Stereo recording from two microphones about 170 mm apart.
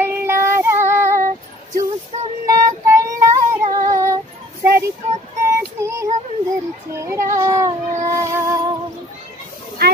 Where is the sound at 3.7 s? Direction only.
50° right (ahead or behind).